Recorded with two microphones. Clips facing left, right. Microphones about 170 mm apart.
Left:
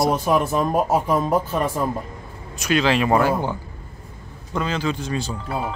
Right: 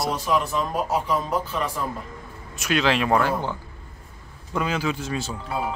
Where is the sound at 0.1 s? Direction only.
50° left (ahead or behind).